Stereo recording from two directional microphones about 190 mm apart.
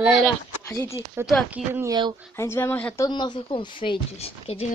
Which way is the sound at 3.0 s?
25° left (ahead or behind).